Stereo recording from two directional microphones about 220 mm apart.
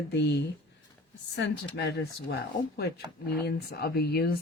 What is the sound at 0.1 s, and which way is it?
A woman's voice, 50° left (ahead or behind).